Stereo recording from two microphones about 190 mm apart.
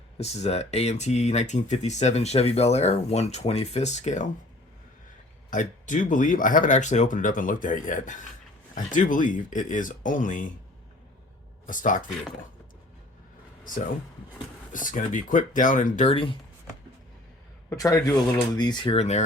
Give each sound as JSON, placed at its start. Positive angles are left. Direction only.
{"t": 0.2, "sound": "speech", "side_deg": 35}
{"t": 5.5, "sound": "speech", "side_deg": 40}
{"t": 11.6, "sound": "speech", "side_deg": 45}
{"t": 14.7, "sound": "speech", "side_deg": 45}
{"t": 17.7, "sound": "speech", "side_deg": 20}